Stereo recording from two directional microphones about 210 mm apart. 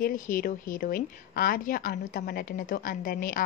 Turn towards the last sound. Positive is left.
turn(degrees=45)  # may be behind; listen again after turning